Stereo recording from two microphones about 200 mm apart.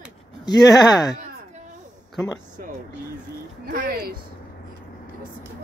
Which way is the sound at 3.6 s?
45° right (ahead or behind).